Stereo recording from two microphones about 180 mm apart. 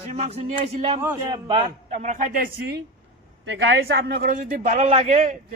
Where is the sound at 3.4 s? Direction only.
75° right (ahead or behind); by 5.5 s 45° right (ahead or behind).